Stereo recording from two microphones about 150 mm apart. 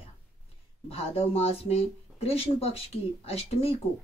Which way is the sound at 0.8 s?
40° left (ahead or behind).